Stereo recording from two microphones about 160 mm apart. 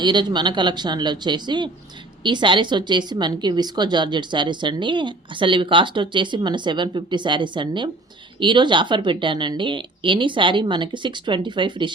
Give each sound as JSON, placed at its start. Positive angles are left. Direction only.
{"t": 0.0, "sound": "a woman's voice", "side_deg": -30}